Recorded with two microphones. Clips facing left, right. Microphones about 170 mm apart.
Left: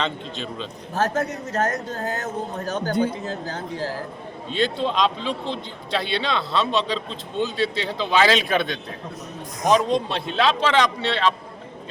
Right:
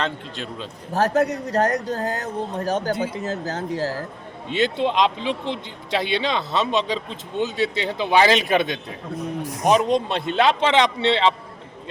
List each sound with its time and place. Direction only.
0.9 s speech: 35° right (ahead or behind)
4.6 s a man's voice: 15° right (ahead or behind)